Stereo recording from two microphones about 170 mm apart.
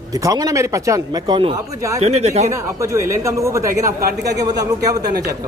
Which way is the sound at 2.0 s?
40° right (ahead or behind).